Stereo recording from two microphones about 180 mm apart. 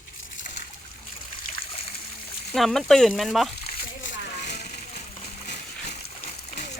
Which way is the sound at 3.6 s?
90° left.